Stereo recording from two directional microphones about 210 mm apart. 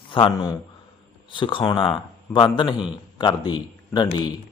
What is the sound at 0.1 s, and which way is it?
A man's voice, 25° left (ahead or behind).